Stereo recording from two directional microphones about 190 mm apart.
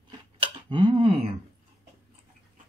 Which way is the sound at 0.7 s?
25° right (ahead or behind).